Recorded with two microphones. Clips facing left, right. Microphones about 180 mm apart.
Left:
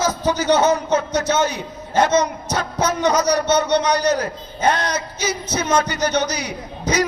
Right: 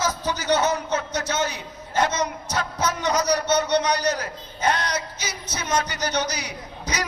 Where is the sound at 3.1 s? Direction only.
75° left (ahead or behind).